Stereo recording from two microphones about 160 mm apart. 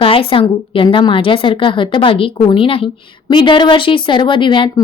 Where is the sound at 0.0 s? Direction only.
35° left (ahead or behind).